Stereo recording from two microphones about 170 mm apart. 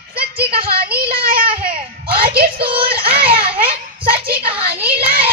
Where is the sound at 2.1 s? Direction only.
65° right (ahead or behind).